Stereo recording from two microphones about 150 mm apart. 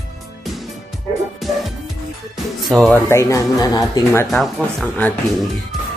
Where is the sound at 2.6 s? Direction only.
Centre (ahead or behind).